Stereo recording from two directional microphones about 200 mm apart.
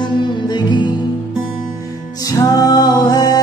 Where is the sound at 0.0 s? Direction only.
20° left (ahead or behind).